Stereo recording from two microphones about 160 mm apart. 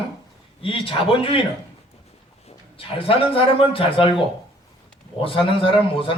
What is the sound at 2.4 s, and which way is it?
A man's voice, 35° left (ahead or behind).